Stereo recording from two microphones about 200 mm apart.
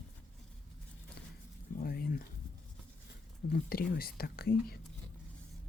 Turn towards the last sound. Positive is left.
turn(degrees=50)  # may be behind; listen again after turning